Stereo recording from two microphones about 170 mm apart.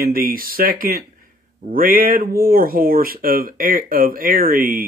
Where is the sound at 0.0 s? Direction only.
60° right (ahead or behind).